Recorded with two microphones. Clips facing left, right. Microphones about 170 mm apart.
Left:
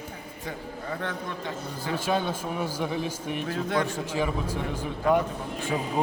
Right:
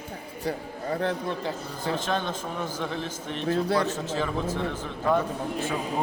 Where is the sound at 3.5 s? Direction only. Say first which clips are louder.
Right 4 dB; 35° right (ahead or behind).